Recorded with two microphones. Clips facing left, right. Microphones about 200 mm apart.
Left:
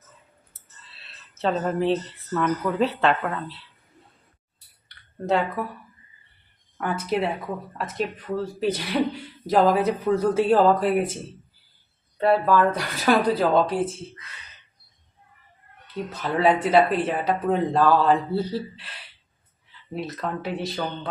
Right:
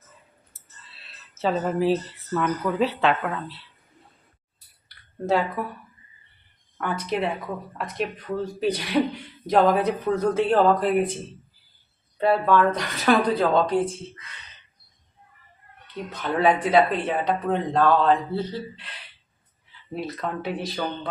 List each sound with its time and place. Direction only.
0.9 s speech: centre (ahead or behind)
5.2 s speech: centre (ahead or behind)
6.7 s speech: 5° left (ahead or behind)
8.6 s speech: centre (ahead or behind)
12.1 s speech: centre (ahead or behind)
16.1 s speech: centre (ahead or behind)
19.9 s speech: centre (ahead or behind)